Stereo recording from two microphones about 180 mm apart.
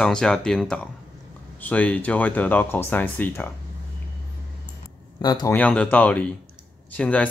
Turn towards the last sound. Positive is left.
turn(degrees=5)  # may be behind; listen again after turning